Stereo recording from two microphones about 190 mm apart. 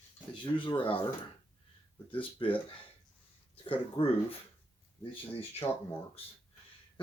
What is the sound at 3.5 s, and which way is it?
Speech, 30° left (ahead or behind).